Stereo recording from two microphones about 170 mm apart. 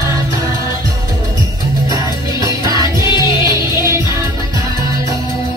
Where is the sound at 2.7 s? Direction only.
25° left (ahead or behind).